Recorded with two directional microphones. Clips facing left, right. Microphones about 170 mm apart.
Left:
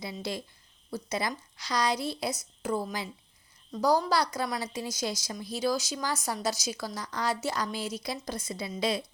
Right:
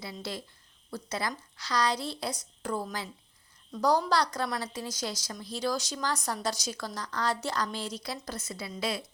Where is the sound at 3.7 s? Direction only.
Centre (ahead or behind).